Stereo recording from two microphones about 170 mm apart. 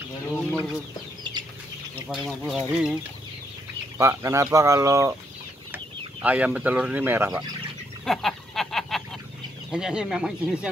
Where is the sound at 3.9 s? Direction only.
15° right (ahead or behind).